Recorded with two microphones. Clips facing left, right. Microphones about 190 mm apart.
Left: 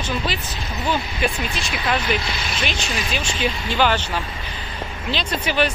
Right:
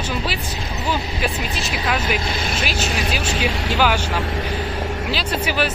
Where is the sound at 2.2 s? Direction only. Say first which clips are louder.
Right 4 dB; 45° right (ahead or behind).